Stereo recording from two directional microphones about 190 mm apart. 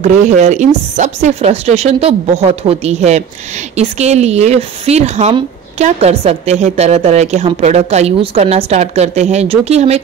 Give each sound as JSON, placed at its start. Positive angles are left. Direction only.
{"t": 0.0, "sound": "speech", "side_deg": -40}